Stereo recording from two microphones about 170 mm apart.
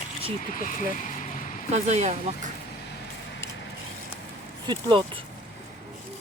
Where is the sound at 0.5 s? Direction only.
50° left (ahead or behind).